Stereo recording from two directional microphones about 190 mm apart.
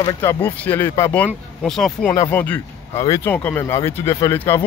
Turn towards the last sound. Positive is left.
turn(degrees=10)  # may be behind; listen again after turning